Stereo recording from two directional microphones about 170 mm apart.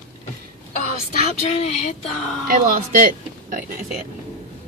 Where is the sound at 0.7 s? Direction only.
45° left (ahead or behind).